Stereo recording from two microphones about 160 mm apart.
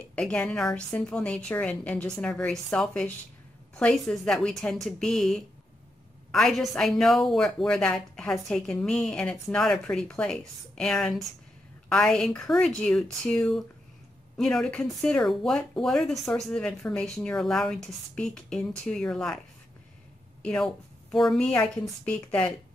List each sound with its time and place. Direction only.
0.1 s a woman's voice: 5° left (ahead or behind)
20.4 s a woman's voice: 5° left (ahead or behind)